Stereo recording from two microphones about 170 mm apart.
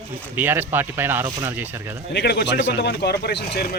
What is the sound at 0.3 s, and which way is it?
Speech, 10° right (ahead or behind).